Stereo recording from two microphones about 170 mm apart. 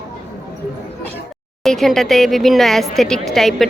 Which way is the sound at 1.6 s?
Centre (ahead or behind).